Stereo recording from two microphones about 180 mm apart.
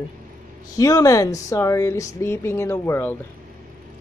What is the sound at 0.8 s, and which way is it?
Speech, 20° left (ahead or behind).